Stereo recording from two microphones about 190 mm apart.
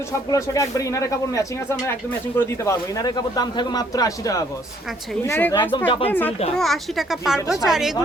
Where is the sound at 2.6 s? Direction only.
20° left (ahead or behind).